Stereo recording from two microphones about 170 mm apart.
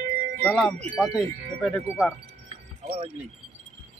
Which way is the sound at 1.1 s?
Centre (ahead or behind).